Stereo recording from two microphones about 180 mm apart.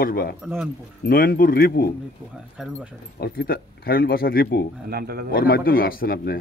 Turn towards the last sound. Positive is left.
turn(degrees=60)  # may be behind; listen again after turning